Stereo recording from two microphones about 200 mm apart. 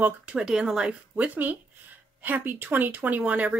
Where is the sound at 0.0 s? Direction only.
5° right (ahead or behind).